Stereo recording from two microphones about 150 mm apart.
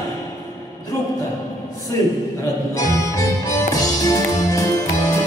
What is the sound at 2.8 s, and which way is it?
Music, 20° left (ahead or behind).